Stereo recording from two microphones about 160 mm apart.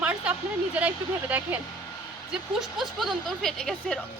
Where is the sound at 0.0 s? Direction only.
10° right (ahead or behind).